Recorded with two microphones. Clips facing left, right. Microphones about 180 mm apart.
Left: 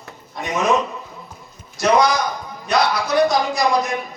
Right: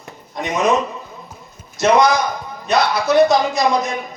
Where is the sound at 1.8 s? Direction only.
25° right (ahead or behind).